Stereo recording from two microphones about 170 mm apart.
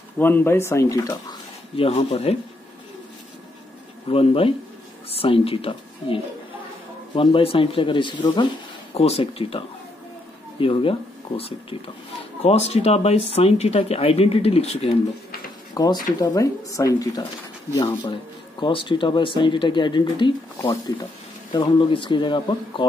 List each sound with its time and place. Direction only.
0.2 s speech: 10° left (ahead or behind)
1.8 s speech: 35° left (ahead or behind)
4.1 s speech: 35° left (ahead or behind)
10.6 s speech: 30° left (ahead or behind)
15.7 s speech: 25° left (ahead or behind)